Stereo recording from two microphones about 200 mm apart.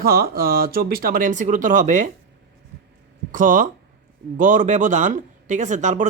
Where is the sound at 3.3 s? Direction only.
40° right (ahead or behind).